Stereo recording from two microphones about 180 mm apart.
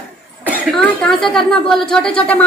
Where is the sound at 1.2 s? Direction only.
Centre (ahead or behind).